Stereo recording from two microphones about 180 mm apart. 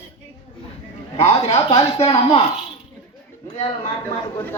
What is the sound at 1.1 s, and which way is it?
Speech, 35° left (ahead or behind).